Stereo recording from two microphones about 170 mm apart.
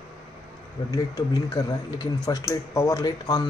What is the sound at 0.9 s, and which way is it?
Speech, 20° left (ahead or behind).